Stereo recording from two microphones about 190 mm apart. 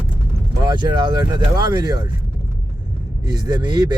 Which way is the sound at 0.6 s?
25° right (ahead or behind).